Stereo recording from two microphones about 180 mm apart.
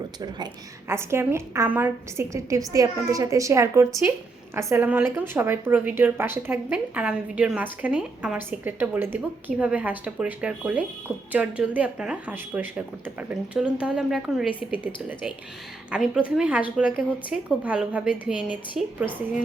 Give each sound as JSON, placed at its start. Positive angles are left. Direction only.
{"t": 0.9, "sound": "speech", "side_deg": -15}
{"t": 15.9, "sound": "a woman's voice", "side_deg": -5}